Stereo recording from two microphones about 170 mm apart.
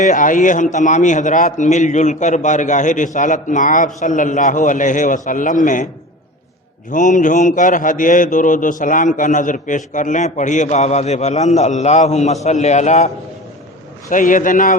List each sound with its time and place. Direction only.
0.0 s a man's voice: 50° left (ahead or behind)
6.9 s a man's voice: 50° left (ahead or behind)
14.1 s a man's voice: 50° left (ahead or behind)